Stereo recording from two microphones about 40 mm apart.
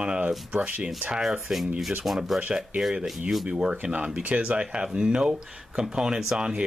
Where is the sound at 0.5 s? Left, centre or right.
Right.